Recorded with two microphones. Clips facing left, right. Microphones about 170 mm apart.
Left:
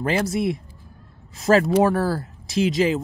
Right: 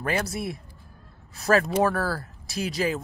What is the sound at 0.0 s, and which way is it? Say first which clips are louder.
Speech: left 6 dB; 20° left (ahead or behind).